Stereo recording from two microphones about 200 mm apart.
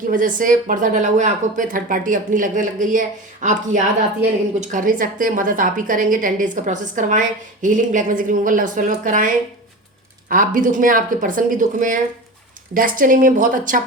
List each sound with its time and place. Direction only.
0.1 s a woman's voice: 40° right (ahead or behind)